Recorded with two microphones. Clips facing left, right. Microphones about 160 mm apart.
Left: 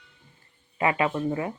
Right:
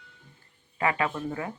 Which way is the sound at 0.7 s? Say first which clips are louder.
Left 3 dB; 20° left (ahead or behind).